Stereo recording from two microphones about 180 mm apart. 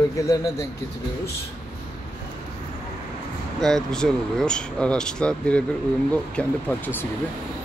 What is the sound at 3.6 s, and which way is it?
A man's voice, 5° left (ahead or behind).